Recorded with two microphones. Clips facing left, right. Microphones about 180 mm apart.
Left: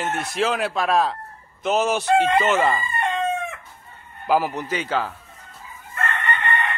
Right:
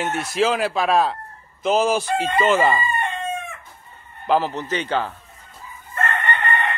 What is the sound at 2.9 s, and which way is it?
Chicken, 90° left.